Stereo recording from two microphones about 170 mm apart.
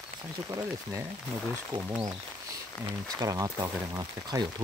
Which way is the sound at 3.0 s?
20° right (ahead or behind).